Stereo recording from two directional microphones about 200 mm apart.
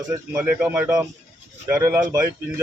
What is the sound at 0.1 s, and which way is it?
Speech, 10° right (ahead or behind).